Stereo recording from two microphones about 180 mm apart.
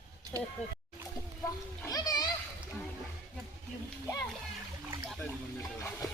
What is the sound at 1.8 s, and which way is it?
Splash, 20° left (ahead or behind).